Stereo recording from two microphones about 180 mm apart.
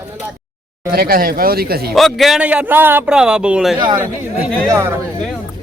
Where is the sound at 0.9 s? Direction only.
55° right (ahead or behind).